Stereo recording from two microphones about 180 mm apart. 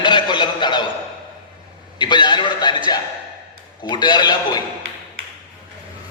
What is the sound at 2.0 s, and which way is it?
A man's voice, 25° left (ahead or behind).